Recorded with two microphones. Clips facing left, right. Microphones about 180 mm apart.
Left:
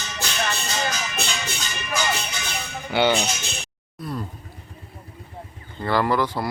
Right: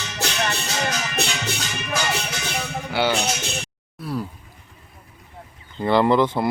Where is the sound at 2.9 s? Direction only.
5° right (ahead or behind).